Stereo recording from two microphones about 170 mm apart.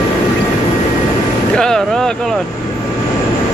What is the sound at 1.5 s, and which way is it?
Vehicle, 5° left (ahead or behind).